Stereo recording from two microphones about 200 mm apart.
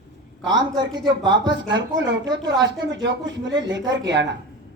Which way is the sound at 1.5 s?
65° right (ahead or behind).